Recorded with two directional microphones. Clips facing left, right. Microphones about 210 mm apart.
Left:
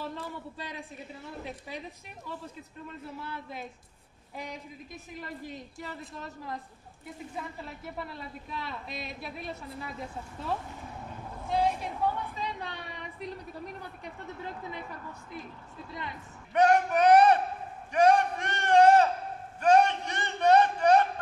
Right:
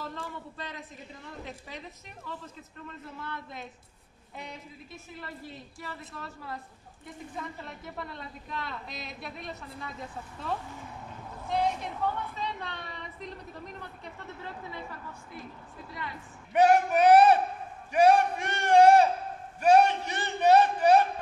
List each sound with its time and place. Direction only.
0.0 s a man's voice: 10° left (ahead or behind)
3.2 s a woman's voice: 10° left (ahead or behind)
4.9 s a woman's voice: 15° left (ahead or behind)
7.3 s a woman's voice: 5° left (ahead or behind)
11.4 s a woman's voice: 5° left (ahead or behind)
16.5 s a man's voice: 5° right (ahead or behind)
17.9 s a sound: 10° right (ahead or behind)